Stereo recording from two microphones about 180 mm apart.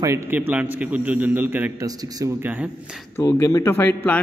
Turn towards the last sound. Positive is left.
turn(degrees=10)  # may be behind; listen again after turning